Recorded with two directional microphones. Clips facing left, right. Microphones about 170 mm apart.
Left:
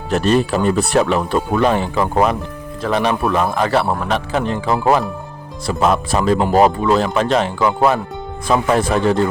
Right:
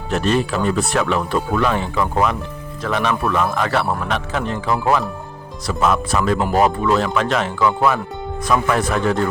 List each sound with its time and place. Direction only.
0.1 s a man's voice: 40° left (ahead or behind)